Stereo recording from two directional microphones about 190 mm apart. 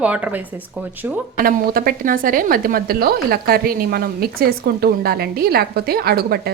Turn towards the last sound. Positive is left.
turn(degrees=-55)  # may be behind; listen again after turning